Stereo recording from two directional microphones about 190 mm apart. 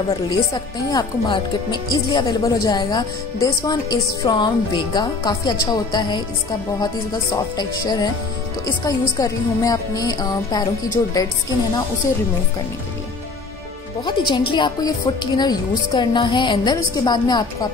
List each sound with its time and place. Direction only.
0.1 s speech: 20° left (ahead or behind)
7.5 s speech: 20° left (ahead or behind)
14.0 s speech: 25° left (ahead or behind)